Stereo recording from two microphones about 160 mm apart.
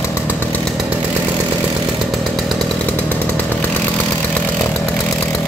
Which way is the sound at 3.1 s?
10° left (ahead or behind).